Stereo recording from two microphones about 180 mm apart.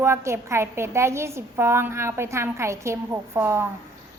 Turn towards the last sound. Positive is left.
turn(degrees=-15)  # may be behind; listen again after turning